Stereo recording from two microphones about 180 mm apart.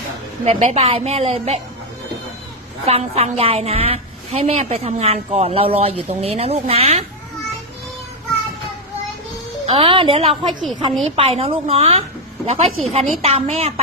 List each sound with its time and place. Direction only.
0.4 s a woman's voice: 35° right (ahead or behind)
2.8 s a woman's voice: 35° right (ahead or behind)
9.6 s a woman's voice: 30° right (ahead or behind)